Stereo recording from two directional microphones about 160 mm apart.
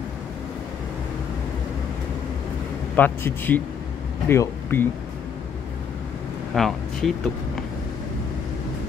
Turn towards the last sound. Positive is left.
turn(degrees=0)  # may be behind; listen again after turning